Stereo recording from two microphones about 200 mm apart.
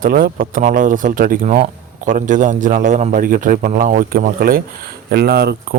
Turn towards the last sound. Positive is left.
turn(degrees=-50)  # may be behind; listen again after turning